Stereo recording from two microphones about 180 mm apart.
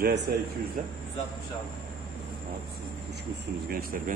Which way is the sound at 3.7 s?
55° right (ahead or behind).